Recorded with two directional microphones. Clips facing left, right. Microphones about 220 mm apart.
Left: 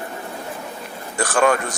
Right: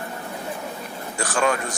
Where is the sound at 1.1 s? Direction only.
55° left (ahead or behind).